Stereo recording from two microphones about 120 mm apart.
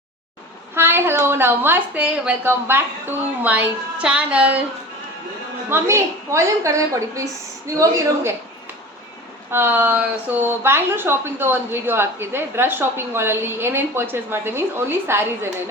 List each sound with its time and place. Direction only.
0.8 s a woman's voice: 20° right (ahead or behind)
5.6 s a woman's voice: 20° right (ahead or behind)
9.5 s a woman's voice: 20° right (ahead or behind)